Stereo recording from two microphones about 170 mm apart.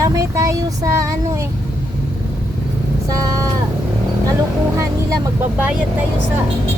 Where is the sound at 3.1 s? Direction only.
20° right (ahead or behind).